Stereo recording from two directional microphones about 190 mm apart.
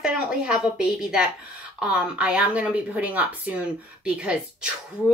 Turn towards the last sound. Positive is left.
turn(degrees=-5)  # may be behind; listen again after turning